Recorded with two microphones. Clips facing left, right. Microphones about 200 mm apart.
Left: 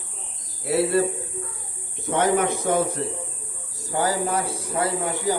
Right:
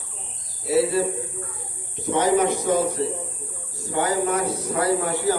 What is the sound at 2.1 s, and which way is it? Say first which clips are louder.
Speech: right 2 dB; 55° left (ahead or behind).